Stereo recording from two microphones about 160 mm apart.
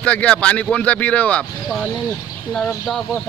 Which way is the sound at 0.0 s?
10° left (ahead or behind).